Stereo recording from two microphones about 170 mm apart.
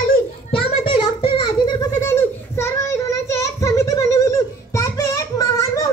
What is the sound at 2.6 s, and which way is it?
Child singing, 15° left (ahead or behind).